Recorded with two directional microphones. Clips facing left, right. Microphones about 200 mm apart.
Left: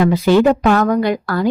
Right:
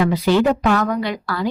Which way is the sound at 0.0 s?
50° left (ahead or behind).